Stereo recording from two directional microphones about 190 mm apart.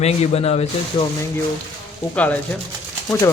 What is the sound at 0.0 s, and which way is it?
Speech, 35° left (ahead or behind).